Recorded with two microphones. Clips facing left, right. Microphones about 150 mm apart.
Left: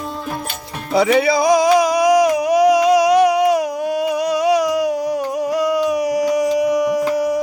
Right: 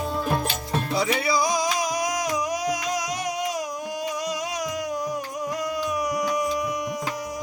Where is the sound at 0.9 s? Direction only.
65° left (ahead or behind).